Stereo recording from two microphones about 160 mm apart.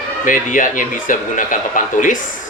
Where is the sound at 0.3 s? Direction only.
55° left (ahead or behind).